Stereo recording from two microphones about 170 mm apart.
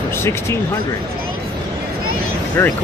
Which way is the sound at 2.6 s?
10° left (ahead or behind).